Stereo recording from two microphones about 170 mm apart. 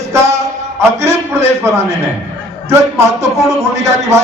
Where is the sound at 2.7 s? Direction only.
15° right (ahead or behind).